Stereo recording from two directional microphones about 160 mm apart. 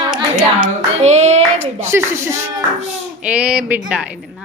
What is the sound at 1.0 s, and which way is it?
Speech, 45° right (ahead or behind).